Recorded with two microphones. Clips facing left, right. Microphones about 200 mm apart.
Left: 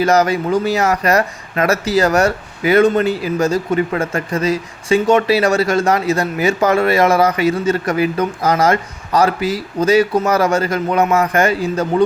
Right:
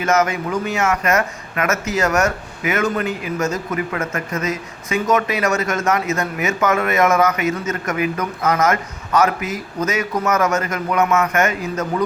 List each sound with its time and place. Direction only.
0.0 s a man's voice: 35° left (ahead or behind)